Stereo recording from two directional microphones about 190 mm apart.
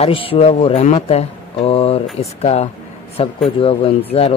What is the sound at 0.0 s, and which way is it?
Speech, 30° left (ahead or behind).